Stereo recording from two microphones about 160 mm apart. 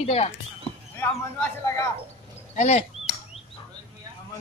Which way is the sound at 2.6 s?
45° left (ahead or behind).